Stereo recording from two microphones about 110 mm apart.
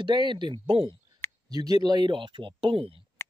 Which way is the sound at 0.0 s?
45° right (ahead or behind).